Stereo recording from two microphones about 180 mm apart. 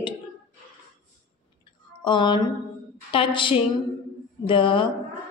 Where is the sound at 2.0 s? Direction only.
25° left (ahead or behind).